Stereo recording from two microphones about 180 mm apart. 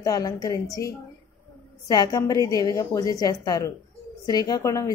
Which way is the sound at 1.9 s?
20° left (ahead or behind).